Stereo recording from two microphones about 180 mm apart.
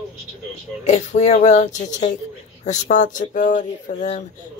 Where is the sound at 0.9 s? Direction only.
40° left (ahead or behind).